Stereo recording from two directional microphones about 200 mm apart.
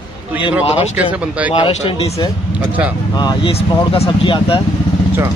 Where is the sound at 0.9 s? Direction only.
5° right (ahead or behind).